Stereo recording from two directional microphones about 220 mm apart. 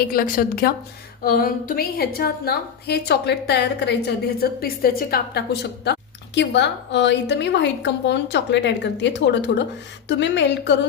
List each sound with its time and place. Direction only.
0.0 s a woman's voice: 40° left (ahead or behind)